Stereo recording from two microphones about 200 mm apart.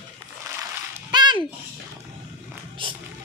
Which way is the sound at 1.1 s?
20° right (ahead or behind).